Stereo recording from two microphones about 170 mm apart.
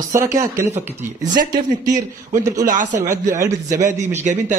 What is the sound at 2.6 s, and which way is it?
Speech, 50° right (ahead or behind).